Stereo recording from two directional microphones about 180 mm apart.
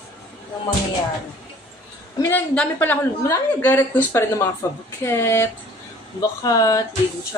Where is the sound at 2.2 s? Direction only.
10° left (ahead or behind).